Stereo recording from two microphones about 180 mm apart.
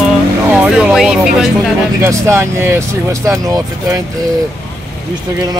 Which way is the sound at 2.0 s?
15° right (ahead or behind).